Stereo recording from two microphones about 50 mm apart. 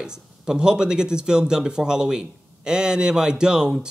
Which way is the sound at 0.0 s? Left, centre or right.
Centre.